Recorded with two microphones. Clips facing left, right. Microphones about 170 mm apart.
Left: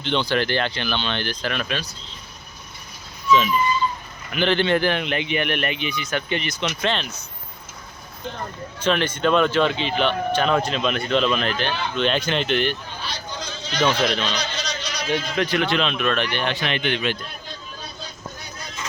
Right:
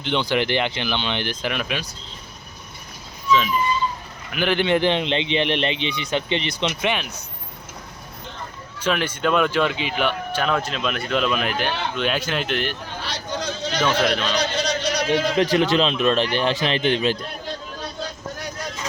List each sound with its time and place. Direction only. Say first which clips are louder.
0.0 s speech: even; 15° right (ahead or behind)
4.3 s speech: even; 10° right (ahead or behind); by 6.7 s 25° right (ahead or behind)
6.8 s speech: left 2 dB; 10° right (ahead or behind)
8.8 s speech: left 1 dB; 10° right (ahead or behind)
13.0 s speech: right 4 dB; 75° right (ahead or behind)
14.0 s speech: right 1 dB; 5° right (ahead or behind)
14.3 s a sound: right 6 dB; 60° right (ahead or behind); by 15.4 s 85° right
15.4 s speech: right 3 dB; 30° right (ahead or behind)
17.4 s vehicle: right 6 dB; 90° right